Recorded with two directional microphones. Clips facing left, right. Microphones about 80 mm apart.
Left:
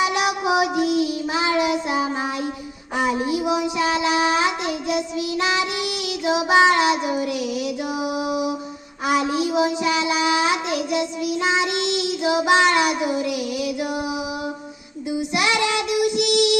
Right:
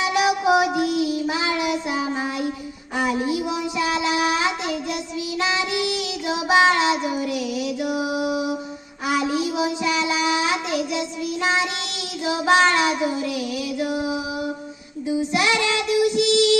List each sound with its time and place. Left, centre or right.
0.2 s music: centre
1.3 s child singing: left
7.8 s music: left
9.0 s child singing: left
13.7 s music: centre
15.3 s child singing: centre